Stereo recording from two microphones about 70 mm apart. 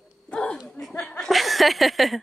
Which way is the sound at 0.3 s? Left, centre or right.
Centre.